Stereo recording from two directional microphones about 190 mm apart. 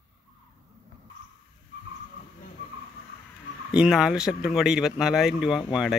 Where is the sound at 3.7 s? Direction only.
5° right (ahead or behind).